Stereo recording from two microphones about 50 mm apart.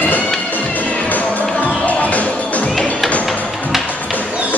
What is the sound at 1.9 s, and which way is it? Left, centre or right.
Music, left.